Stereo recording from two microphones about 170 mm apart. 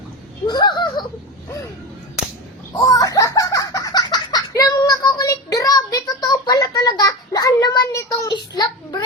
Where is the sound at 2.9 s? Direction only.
20° left (ahead or behind).